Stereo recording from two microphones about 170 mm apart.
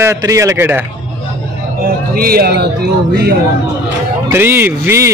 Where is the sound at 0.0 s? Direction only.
20° right (ahead or behind).